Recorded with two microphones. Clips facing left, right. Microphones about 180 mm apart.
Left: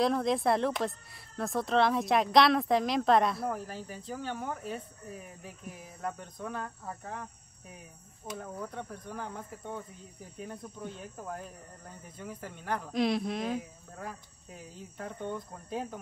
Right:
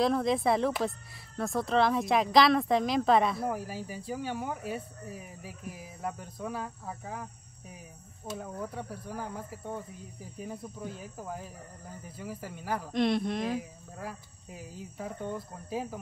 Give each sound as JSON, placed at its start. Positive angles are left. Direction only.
{"t": 0.0, "sound": "speech", "side_deg": 0}